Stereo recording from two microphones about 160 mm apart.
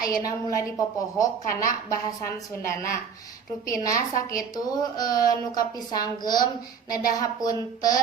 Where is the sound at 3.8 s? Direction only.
20° left (ahead or behind).